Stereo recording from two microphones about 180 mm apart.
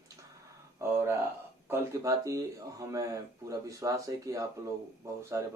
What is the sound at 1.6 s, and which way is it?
Speech, 15° right (ahead or behind).